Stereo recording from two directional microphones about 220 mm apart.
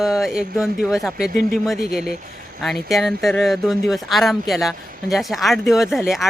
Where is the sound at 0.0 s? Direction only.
Centre (ahead or behind).